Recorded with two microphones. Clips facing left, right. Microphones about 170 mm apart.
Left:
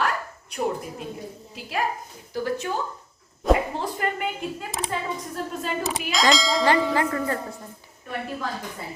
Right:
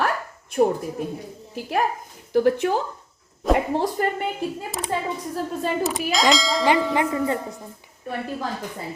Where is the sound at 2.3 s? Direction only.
60° right (ahead or behind).